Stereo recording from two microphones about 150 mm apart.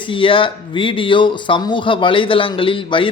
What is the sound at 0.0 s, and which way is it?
Speech, 35° left (ahead or behind).